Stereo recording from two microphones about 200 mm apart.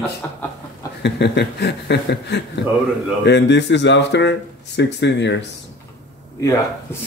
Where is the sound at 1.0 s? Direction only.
60° left (ahead or behind).